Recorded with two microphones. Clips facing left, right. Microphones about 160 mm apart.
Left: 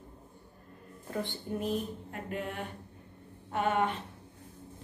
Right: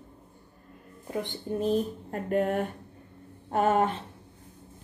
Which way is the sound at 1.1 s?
20° right (ahead or behind).